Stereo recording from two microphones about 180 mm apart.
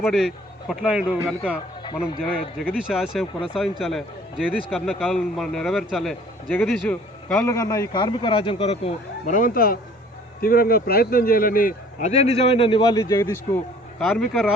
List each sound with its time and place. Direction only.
0.1 s a man's voice: centre (ahead or behind)
1.8 s speech: 25° left (ahead or behind)
2.3 s a man's voice: 5° right (ahead or behind)
7.5 s a man's voice: 20° left (ahead or behind)
13.0 s speech: 15° left (ahead or behind)
14.0 s speech: centre (ahead or behind)